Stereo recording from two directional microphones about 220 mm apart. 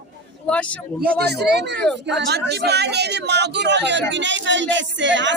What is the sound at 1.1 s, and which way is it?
A man's voice, 50° right (ahead or behind).